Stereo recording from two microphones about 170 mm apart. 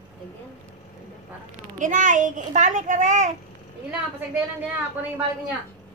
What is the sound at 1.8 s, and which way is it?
A child's voice, 50° right (ahead or behind).